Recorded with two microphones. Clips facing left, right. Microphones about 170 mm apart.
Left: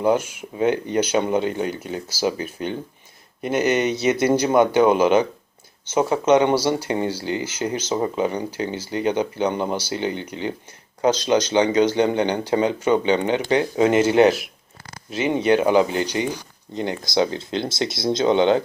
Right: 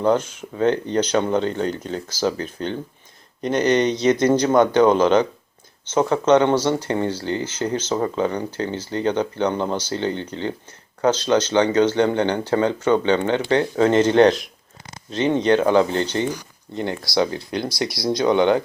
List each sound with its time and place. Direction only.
0.0 s speech: 10° left (ahead or behind)